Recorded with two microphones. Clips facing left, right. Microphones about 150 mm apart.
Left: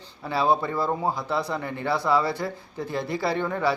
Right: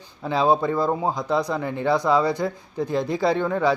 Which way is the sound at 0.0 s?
15° right (ahead or behind).